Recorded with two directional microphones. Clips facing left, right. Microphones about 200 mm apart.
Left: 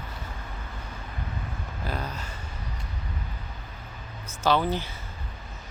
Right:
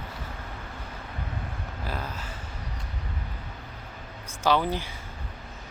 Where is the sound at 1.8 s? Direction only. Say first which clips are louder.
Left 2 dB; 5° right (ahead or behind).